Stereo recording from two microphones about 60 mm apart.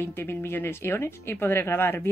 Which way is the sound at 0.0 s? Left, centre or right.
Left.